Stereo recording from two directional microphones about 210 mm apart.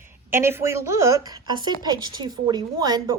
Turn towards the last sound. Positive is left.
turn(degrees=-20)  # may be behind; listen again after turning